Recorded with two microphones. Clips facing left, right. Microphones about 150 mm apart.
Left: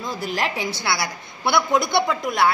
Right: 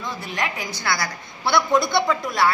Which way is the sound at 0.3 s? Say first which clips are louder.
Left 3 dB; 30° left (ahead or behind).